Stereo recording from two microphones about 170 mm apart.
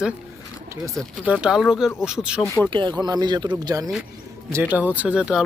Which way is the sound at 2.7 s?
25° right (ahead or behind).